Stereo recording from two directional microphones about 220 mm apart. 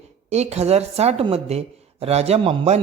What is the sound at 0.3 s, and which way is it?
A man's voice, 30° right (ahead or behind).